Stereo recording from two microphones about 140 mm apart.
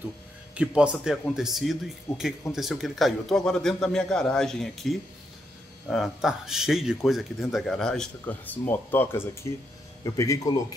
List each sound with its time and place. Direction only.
0.6 s speech: 5° right (ahead or behind); by 10.5 s 20° left (ahead or behind)